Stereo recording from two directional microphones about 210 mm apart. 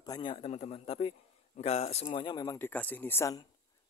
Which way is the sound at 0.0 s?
20° left (ahead or behind).